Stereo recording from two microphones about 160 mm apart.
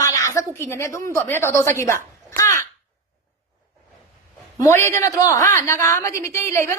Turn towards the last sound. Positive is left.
turn(degrees=15)  # may be behind; listen again after turning